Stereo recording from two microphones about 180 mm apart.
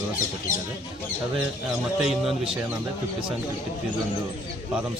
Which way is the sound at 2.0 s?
Centre (ahead or behind).